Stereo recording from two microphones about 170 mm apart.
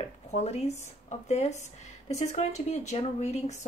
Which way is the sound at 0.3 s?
40° left (ahead or behind).